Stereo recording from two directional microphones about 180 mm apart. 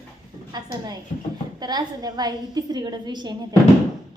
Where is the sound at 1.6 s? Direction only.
20° right (ahead or behind).